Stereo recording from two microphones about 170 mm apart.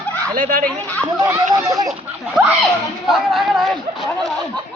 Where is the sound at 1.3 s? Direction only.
20° right (ahead or behind).